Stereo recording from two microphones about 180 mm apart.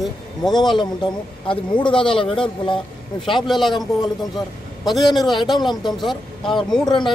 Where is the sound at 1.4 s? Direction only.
25° left (ahead or behind).